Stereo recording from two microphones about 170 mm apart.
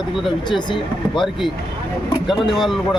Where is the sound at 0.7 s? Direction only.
25° left (ahead or behind).